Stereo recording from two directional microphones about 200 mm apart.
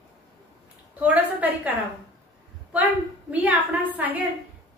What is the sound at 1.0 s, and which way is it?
A woman's voice, 10° right (ahead or behind).